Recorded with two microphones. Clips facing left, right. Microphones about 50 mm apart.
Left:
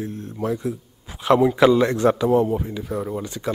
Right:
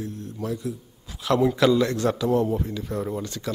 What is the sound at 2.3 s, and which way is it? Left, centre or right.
Speech, centre.